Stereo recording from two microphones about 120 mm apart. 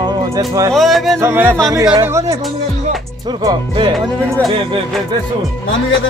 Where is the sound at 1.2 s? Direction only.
20° right (ahead or behind).